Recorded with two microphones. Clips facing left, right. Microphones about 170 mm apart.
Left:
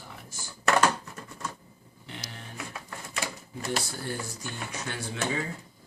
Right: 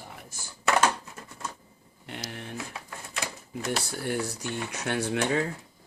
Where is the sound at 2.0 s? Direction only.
55° right (ahead or behind).